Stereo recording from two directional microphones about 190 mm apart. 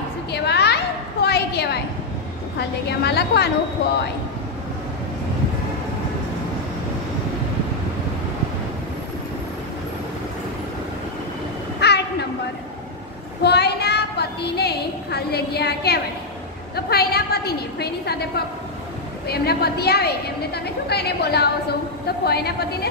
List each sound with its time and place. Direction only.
0.3 s a sound: 60° left (ahead or behind)
2.9 s a woman's voice: 60° left (ahead or behind)
11.8 s train: 60° left (ahead or behind)
13.4 s a sound: 60° left (ahead or behind)
16.7 s a woman's voice: 55° left (ahead or behind)
19.2 s a woman's voice: 55° left (ahead or behind)